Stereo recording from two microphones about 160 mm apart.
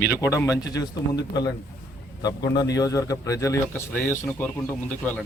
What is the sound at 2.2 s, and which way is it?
Speech, 25° left (ahead or behind).